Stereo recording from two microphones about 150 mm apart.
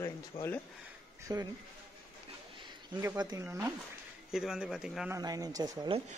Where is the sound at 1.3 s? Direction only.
25° right (ahead or behind).